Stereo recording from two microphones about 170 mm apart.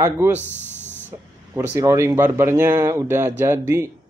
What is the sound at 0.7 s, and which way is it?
Spray, 10° left (ahead or behind).